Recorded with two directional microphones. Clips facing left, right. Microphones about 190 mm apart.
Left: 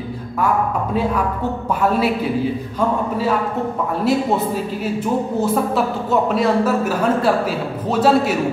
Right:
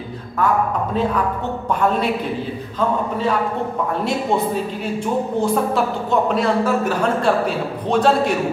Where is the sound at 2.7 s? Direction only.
5° left (ahead or behind).